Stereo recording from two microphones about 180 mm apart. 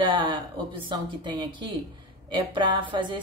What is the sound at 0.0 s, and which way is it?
Speech, 30° right (ahead or behind).